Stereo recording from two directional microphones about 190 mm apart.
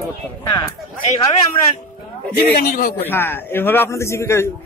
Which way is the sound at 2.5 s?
50° left (ahead or behind).